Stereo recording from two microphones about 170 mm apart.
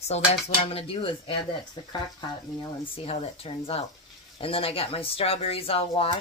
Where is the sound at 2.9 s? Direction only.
35° left (ahead or behind).